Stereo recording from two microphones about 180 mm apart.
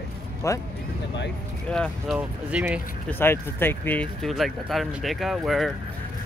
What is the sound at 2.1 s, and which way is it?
Speech, 5° right (ahead or behind).